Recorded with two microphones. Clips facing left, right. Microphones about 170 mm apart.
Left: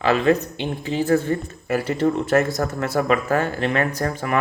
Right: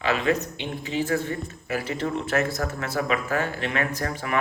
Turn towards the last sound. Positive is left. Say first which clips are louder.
# left 5 dB
turn(degrees=40)  # may be behind; listen again after turning